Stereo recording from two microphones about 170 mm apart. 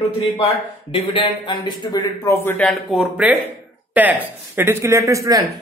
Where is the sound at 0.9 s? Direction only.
30° left (ahead or behind); by 2.7 s 10° left (ahead or behind).